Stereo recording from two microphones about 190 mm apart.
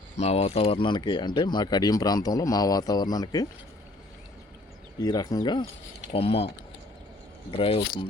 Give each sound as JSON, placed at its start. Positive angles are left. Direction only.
{"t": 0.2, "sound": "speech", "side_deg": 35}
{"t": 4.9, "sound": "speech", "side_deg": 20}
{"t": 7.5, "sound": "speech", "side_deg": 30}